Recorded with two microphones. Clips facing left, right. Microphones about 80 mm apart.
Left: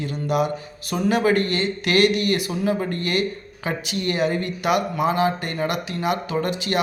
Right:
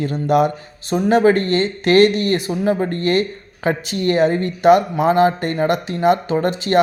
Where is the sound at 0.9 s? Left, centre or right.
Right.